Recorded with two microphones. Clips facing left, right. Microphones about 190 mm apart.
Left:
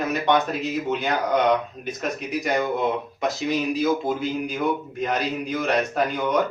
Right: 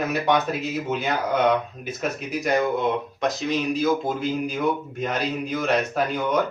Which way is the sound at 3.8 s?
Centre (ahead or behind).